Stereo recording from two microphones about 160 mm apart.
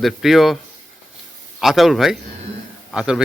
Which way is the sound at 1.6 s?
Centre (ahead or behind).